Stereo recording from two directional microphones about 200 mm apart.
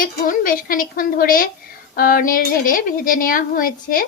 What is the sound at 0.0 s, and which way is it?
A woman's voice, 45° left (ahead or behind).